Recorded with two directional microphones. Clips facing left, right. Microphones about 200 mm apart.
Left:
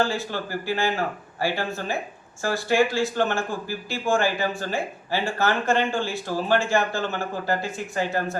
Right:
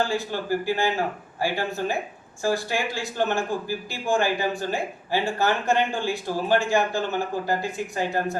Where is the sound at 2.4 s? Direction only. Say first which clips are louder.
Left 3 dB; 15° right (ahead or behind).